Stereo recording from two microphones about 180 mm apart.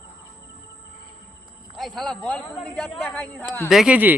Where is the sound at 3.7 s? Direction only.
5° right (ahead or behind).